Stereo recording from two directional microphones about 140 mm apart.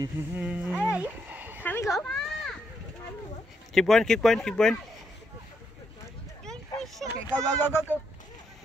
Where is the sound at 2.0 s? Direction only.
5° left (ahead or behind).